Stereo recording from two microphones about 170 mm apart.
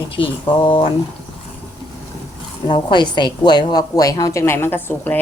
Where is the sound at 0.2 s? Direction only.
30° left (ahead or behind).